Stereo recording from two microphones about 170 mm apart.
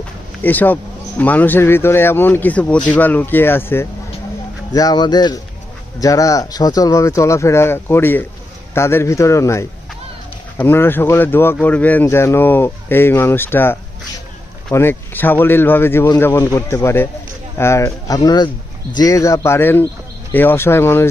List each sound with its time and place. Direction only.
0.4 s speech: 10° left (ahead or behind)
4.7 s speech: 25° left (ahead or behind)